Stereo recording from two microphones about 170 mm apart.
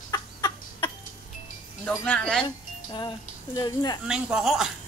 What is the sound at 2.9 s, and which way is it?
Speech, 25° left (ahead or behind).